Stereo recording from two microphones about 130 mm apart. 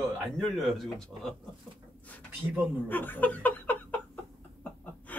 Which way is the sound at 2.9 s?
15° left (ahead or behind).